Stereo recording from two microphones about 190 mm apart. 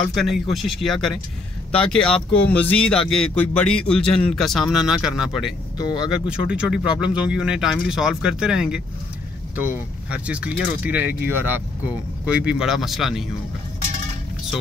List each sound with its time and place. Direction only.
0.1 s speech: centre (ahead or behind)
5.8 s speech: 20° left (ahead or behind)
6.2 s speech: 5° right (ahead or behind)
10.0 s speech: 5° right (ahead or behind)